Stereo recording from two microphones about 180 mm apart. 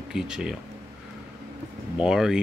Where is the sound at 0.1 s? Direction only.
5° right (ahead or behind).